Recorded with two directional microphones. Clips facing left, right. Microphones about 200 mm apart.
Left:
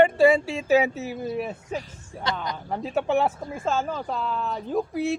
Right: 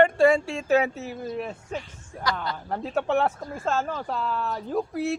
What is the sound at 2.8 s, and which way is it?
Speech, centre (ahead or behind).